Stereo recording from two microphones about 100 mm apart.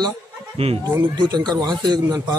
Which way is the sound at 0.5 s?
85° right.